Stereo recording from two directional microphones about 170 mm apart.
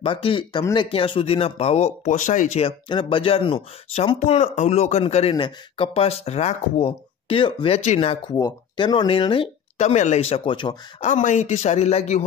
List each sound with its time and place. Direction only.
0.0 s speech: 30° left (ahead or behind)
2.9 s speech: 30° left (ahead or behind)
8.3 s speech: 20° left (ahead or behind)
11.0 s speech: 45° left (ahead or behind)